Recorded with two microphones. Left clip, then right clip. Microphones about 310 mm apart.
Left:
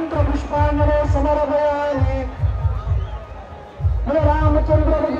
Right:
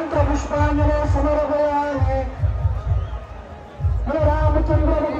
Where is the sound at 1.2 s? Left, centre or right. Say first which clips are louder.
Left 2 dB; centre.